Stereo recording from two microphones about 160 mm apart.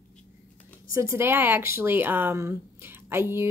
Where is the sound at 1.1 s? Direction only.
15° right (ahead or behind).